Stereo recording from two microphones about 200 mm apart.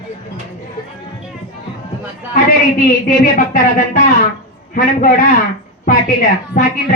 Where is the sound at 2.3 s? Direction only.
45° left (ahead or behind).